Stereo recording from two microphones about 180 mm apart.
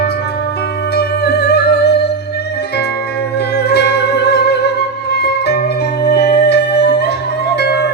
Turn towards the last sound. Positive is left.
turn(degrees=65)  # may be behind; listen again after turning